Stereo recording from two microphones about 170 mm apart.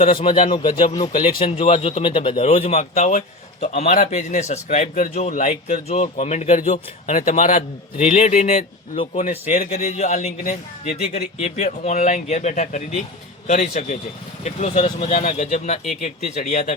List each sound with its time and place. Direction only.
0.0 s a man's voice: 30° left (ahead or behind)